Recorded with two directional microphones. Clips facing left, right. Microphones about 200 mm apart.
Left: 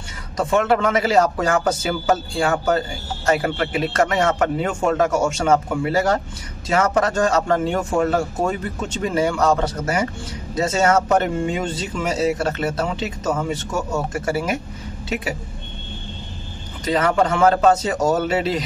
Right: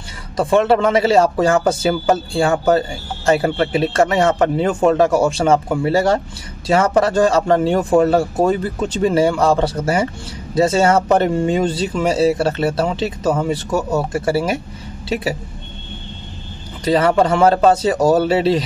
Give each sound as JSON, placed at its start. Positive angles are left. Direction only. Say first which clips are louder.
{"t": 0.4, "sound": "speech", "louder": "right 4 dB", "side_deg": -30}
{"t": 16.8, "sound": "speech", "louder": "right 4 dB", "side_deg": -30}